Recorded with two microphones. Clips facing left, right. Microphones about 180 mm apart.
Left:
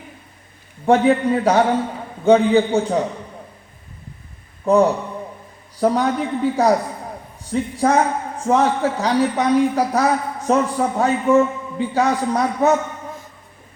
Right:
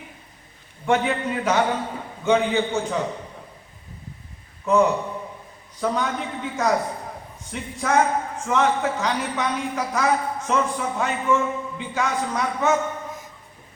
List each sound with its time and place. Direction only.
0.9 s a man's voice: 35° left (ahead or behind)
4.6 s a man's voice: 35° left (ahead or behind)